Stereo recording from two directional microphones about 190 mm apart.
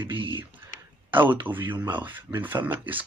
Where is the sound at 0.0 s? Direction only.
25° right (ahead or behind).